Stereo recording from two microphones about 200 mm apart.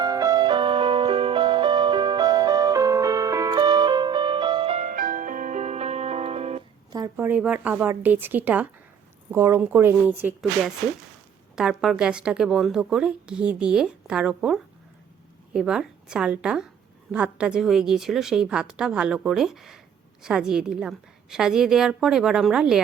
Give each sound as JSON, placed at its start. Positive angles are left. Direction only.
{"t": 0.0, "sound": "music", "side_deg": -20}
{"t": 6.9, "sound": "a woman's voice", "side_deg": -15}